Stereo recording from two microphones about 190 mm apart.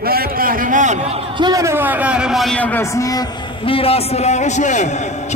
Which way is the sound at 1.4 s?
20° right (ahead or behind).